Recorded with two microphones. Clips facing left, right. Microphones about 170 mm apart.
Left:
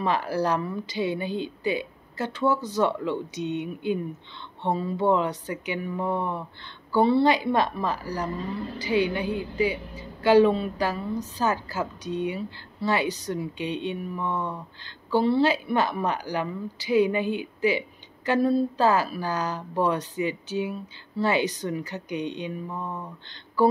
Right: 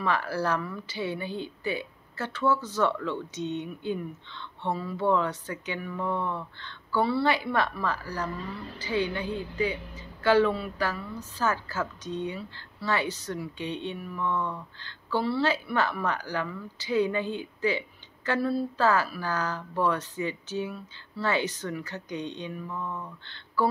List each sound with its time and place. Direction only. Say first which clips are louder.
0.0 s speech: left 3 dB; 15° left (ahead or behind)